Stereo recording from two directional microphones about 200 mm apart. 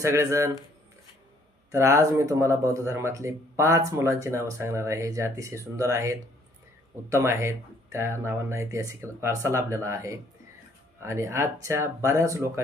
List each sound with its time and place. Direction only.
0.0 s speech: 15° right (ahead or behind)
1.7 s speech: 15° right (ahead or behind)